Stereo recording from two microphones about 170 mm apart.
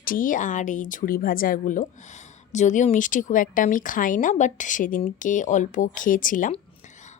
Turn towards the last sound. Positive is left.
turn(degrees=50)  # may be behind; listen again after turning